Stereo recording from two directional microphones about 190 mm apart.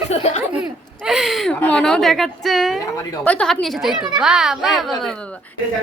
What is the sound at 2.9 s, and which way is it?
Speech, 10° left (ahead or behind).